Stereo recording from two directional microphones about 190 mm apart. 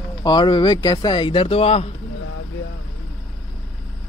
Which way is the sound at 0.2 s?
25° left (ahead or behind).